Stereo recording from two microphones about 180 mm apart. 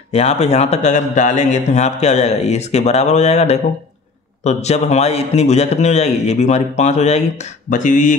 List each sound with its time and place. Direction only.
0.1 s a man's voice: 35° left (ahead or behind)